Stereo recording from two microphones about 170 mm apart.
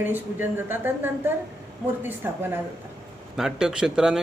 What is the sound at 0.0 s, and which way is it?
A woman's voice, 10° right (ahead or behind).